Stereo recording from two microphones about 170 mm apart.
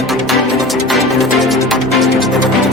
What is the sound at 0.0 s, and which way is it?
Music, centre (ahead or behind).